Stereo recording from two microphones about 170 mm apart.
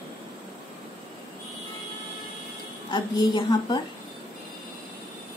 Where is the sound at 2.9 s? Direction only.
25° left (ahead or behind).